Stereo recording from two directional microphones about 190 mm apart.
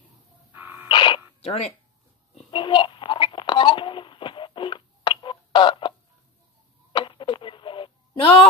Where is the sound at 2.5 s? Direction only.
25° left (ahead or behind).